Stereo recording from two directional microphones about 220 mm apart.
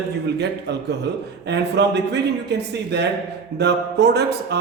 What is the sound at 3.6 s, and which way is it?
Speech, 50° right (ahead or behind).